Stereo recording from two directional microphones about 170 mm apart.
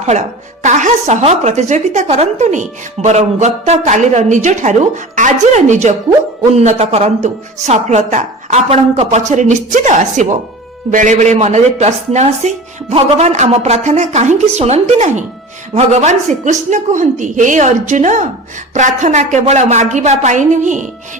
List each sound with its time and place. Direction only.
0.6 s a woman's voice: 45° right (ahead or behind)